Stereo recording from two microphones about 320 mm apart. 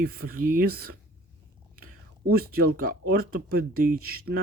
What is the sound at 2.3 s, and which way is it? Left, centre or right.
Speech, right.